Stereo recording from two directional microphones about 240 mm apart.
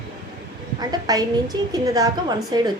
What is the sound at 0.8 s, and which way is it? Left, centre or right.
A woman's voice, centre.